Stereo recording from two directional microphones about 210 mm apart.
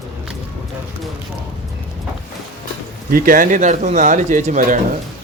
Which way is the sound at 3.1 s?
40° right (ahead or behind).